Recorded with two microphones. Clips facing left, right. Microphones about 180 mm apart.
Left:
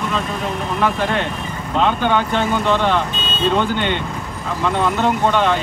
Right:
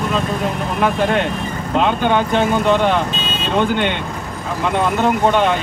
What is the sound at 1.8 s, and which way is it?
Speech, 15° right (ahead or behind).